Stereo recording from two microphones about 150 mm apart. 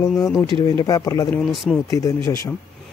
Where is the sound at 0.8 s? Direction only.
25° left (ahead or behind).